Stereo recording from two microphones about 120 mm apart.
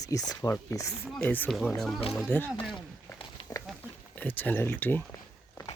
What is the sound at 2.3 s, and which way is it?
Speech, 15° left (ahead or behind).